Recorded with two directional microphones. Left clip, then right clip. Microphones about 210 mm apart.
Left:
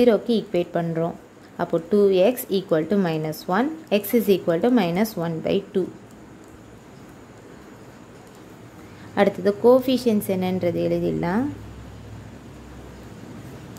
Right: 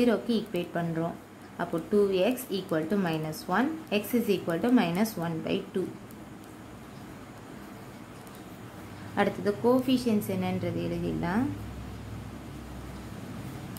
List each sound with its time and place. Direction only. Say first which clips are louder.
0.0 s a woman's voice: left 8 dB; 30° left (ahead or behind)
9.1 s a woman's voice: left 8 dB; 30° left (ahead or behind)